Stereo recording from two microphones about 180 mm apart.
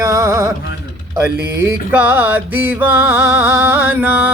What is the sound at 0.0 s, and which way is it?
Music, 15° right (ahead or behind).